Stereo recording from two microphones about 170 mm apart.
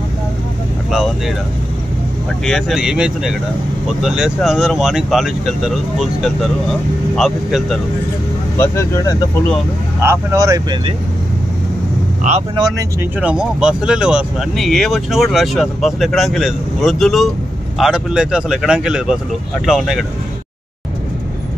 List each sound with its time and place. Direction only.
2.4 s speech: centre (ahead or behind)
8.5 s speech: 20° left (ahead or behind)
10.0 s speech: 20° right (ahead or behind)
12.2 s speech: 40° right (ahead or behind)
13.2 s speech: 5° right (ahead or behind)